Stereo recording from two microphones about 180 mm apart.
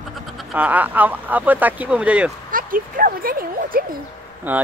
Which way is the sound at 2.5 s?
50° right (ahead or behind).